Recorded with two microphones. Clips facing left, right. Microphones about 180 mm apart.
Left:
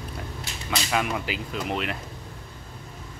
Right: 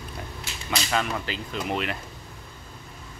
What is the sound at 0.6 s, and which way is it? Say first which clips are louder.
Speech: even; 10° left (ahead or behind).